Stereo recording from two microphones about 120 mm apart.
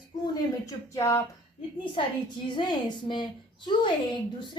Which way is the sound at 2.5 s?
40° left (ahead or behind).